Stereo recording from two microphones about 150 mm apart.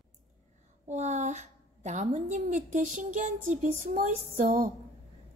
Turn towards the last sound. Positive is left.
turn(degrees=-50)  # may be behind; listen again after turning